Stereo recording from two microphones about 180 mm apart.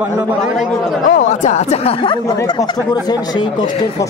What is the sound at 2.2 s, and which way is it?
Speech, 20° left (ahead or behind).